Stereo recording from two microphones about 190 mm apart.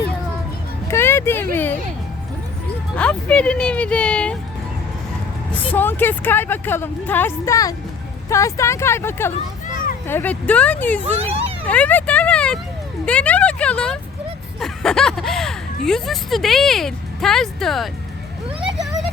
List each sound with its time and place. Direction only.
0.9 s a sound: 15° left (ahead or behind)
2.9 s speech: 5° left (ahead or behind)
5.7 s a woman's voice: 10° left (ahead or behind)
11.0 s speech: 35° right (ahead or behind)
11.6 s vehicle: 10° left (ahead or behind)
13.1 s speech: 5° left (ahead or behind)